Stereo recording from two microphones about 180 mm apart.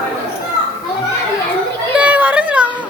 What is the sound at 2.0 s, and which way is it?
Children playing, 10° right (ahead or behind).